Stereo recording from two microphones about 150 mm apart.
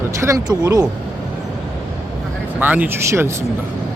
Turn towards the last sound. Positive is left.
turn(degrees=-15)  # may be behind; listen again after turning